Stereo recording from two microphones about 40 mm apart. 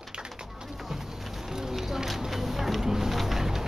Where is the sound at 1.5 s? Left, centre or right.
Centre.